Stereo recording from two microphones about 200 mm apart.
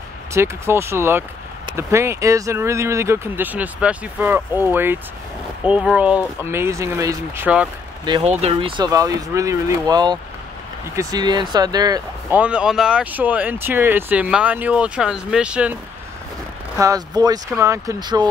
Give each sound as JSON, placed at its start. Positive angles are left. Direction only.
{"t": 0.3, "sound": "speech", "side_deg": -15}
{"t": 8.0, "sound": "speech", "side_deg": -25}
{"t": 12.4, "sound": "speech", "side_deg": -5}
{"t": 16.7, "sound": "speech", "side_deg": -15}